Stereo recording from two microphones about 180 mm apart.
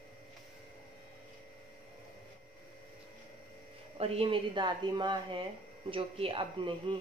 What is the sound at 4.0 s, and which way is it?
Speech, 30° right (ahead or behind).